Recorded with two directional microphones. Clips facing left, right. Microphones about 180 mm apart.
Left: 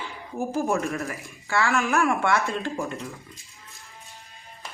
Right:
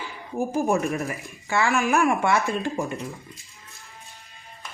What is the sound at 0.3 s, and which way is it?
Speech, 15° right (ahead or behind).